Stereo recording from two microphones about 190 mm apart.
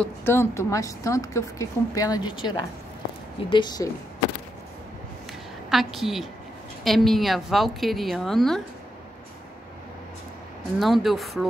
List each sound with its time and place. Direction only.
0.0 s a woman's voice: 10° left (ahead or behind)
5.7 s a woman's voice: centre (ahead or behind)
10.8 s a woman's voice: centre (ahead or behind)